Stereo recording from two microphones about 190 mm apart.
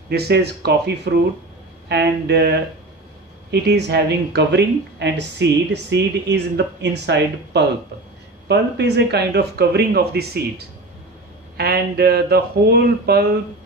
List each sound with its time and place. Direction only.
0.1 s speech: 60° right (ahead or behind)
3.6 s speech: 60° right (ahead or behind)
11.5 s speech: 55° right (ahead or behind)